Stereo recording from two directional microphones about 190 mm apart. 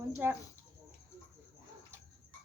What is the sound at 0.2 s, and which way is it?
Speech, 10° right (ahead or behind).